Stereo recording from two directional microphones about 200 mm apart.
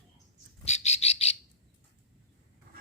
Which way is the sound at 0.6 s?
35° left (ahead or behind).